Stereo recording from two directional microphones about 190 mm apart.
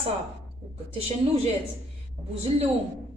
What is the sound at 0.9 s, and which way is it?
Speech, 35° right (ahead or behind).